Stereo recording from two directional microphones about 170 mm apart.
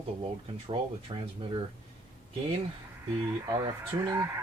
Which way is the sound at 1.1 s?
25° right (ahead or behind).